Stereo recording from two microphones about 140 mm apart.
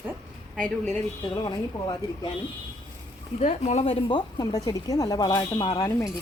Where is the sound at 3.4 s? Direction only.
55° left (ahead or behind); by 5.8 s 30° left (ahead or behind).